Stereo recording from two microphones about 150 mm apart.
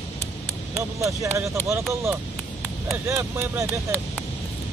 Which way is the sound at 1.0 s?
20° right (ahead or behind).